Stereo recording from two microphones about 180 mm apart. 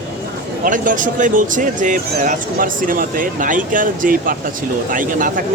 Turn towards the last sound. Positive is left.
turn(degrees=-50)  # may be behind; listen again after turning